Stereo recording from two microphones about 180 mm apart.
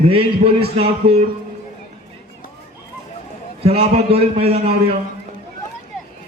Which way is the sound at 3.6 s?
35° right (ahead or behind).